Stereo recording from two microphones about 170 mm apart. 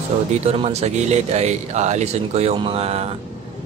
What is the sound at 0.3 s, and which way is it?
Speech, 40° right (ahead or behind).